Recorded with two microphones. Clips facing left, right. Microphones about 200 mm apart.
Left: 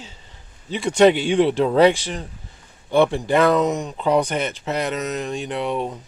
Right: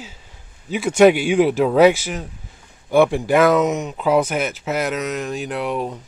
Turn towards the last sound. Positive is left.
turn(degrees=0)  # may be behind; listen again after turning